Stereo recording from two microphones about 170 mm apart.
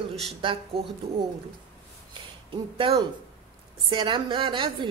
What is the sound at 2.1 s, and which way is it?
A woman's voice, 30° right (ahead or behind).